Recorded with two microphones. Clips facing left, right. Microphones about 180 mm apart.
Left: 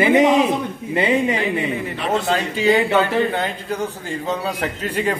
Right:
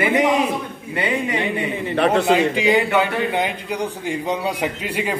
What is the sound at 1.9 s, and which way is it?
Speech, 65° right (ahead or behind).